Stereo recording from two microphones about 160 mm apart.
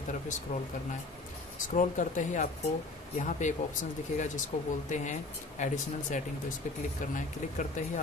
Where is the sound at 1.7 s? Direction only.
50° left (ahead or behind).